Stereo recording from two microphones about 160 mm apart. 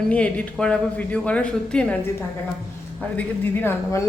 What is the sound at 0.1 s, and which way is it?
Speech, 10° left (ahead or behind).